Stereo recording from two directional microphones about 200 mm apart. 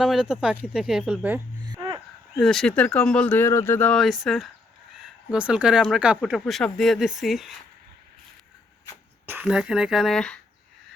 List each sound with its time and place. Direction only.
0.0 s speech: 5° right (ahead or behind)
1.6 s a sound: 20° right (ahead or behind)
2.4 s speech: centre (ahead or behind)
9.2 s speech: 5° right (ahead or behind)